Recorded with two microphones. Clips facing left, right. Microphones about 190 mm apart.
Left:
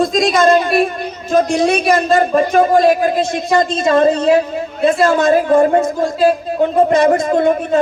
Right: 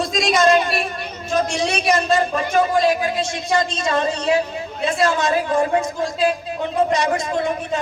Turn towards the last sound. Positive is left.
turn(degrees=55)  # may be behind; listen again after turning